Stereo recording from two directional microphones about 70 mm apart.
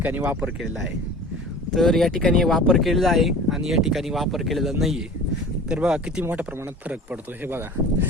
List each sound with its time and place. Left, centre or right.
0.0 s speech: right
1.7 s speech: centre; by 7.5 s right